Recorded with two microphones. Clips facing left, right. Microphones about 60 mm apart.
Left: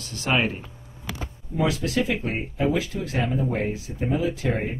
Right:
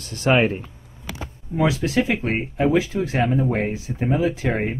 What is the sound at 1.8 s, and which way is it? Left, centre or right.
Speech, right.